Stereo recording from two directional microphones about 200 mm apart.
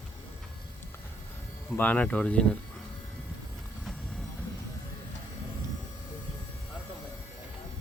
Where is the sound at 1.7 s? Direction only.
10° left (ahead or behind).